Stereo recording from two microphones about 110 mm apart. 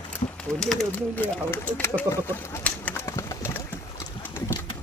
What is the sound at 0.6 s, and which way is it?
Speech, 5° left (ahead or behind).